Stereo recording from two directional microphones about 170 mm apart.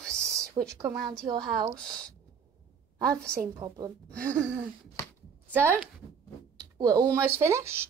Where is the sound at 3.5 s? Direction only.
25° right (ahead or behind).